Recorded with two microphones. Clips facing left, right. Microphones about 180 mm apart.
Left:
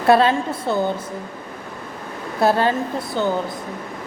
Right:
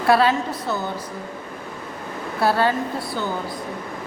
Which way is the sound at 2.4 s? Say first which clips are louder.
Left 2 dB; 20° left (ahead or behind).